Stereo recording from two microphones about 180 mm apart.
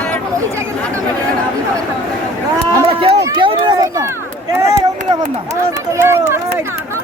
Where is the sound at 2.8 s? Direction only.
30° right (ahead or behind).